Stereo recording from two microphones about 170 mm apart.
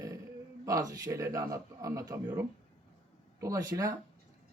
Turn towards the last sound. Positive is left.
turn(degrees=-20)  # may be behind; listen again after turning